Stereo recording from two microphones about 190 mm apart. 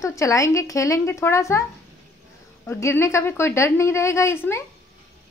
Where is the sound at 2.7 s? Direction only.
15° left (ahead or behind).